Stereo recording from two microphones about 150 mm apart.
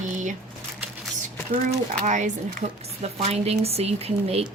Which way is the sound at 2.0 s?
55° right (ahead or behind).